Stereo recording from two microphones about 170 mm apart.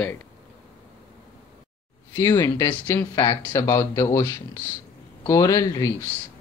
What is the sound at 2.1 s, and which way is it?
Speech, 15° left (ahead or behind).